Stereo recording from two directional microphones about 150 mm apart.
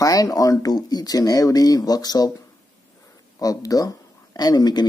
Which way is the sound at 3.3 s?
25° left (ahead or behind).